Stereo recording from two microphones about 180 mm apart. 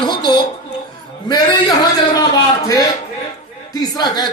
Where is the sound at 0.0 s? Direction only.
25° left (ahead or behind).